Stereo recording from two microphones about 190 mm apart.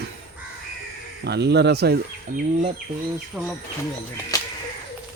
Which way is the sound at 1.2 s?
60° right (ahead or behind).